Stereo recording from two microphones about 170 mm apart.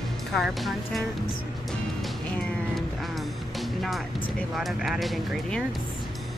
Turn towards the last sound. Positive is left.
turn(degrees=0)  # may be behind; listen again after turning